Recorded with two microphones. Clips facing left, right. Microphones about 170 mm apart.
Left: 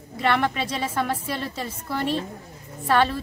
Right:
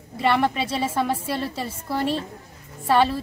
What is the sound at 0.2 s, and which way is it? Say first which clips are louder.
Speech: right 2 dB; 5° right (ahead or behind).